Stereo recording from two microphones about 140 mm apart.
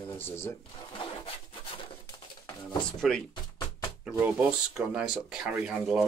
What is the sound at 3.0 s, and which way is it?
Speech, centre (ahead or behind).